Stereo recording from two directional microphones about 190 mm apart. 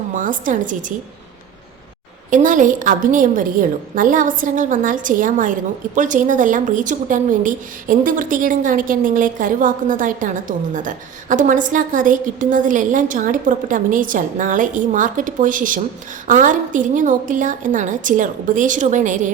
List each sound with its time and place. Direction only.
0.1 s a woman's voice: 45° right (ahead or behind)
2.3 s a woman's voice: 45° right (ahead or behind)